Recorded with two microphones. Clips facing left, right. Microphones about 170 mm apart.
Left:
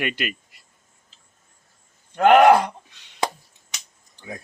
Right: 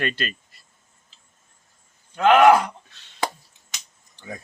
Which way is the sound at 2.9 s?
15° left (ahead or behind).